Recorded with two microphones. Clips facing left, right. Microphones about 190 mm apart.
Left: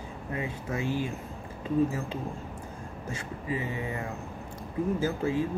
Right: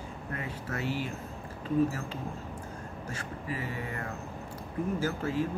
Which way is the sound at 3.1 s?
20° left (ahead or behind).